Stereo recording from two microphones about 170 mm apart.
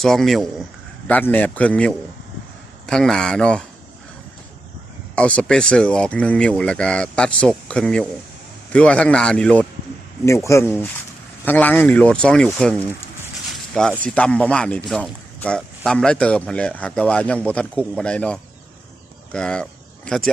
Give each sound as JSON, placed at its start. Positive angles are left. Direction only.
{"t": 0.0, "sound": "speech", "side_deg": 0}
{"t": 5.1, "sound": "speech", "side_deg": 5}
{"t": 10.2, "sound": "speech", "side_deg": 15}
{"t": 14.0, "sound": "speech", "side_deg": 5}